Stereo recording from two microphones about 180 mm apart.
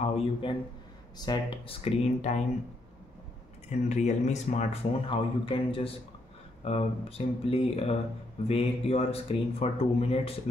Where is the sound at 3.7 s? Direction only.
40° left (ahead or behind).